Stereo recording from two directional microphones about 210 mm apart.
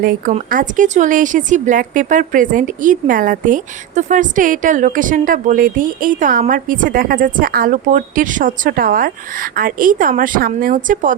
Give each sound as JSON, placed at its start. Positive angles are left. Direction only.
{"t": 0.0, "sound": "a woman's voice", "side_deg": -40}